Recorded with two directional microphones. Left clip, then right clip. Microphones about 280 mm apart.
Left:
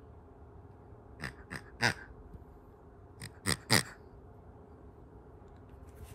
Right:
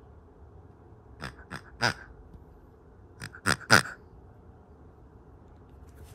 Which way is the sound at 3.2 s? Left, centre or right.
Centre.